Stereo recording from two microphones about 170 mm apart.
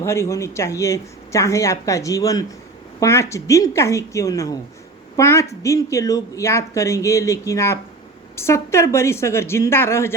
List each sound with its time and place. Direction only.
0.0 s a woman's voice: 15° left (ahead or behind)